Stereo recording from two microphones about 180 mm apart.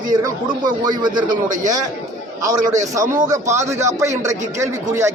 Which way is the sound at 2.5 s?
20° right (ahead or behind).